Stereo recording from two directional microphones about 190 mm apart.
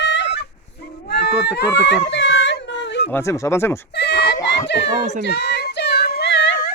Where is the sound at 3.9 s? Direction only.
60° left (ahead or behind).